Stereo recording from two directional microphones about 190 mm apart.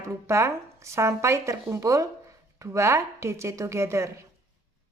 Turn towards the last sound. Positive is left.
turn(degrees=-15)  # may be behind; listen again after turning